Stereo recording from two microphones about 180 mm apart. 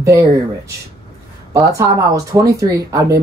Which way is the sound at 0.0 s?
20° right (ahead or behind).